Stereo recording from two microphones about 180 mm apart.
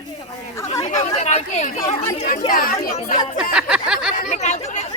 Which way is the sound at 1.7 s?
20° left (ahead or behind).